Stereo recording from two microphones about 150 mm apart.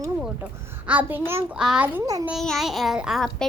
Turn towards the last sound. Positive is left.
turn(degrees=0)  # may be behind; listen again after turning